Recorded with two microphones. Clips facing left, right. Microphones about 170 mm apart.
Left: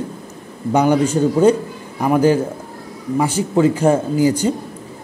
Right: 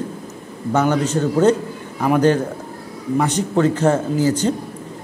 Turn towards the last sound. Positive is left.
turn(degrees=10)  # may be behind; listen again after turning